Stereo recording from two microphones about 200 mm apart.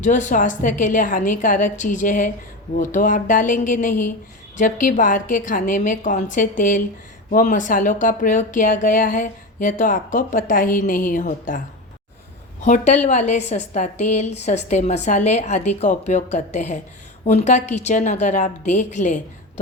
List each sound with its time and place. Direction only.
0.0 s speech: 40° left (ahead or behind)
12.6 s speech: 35° left (ahead or behind)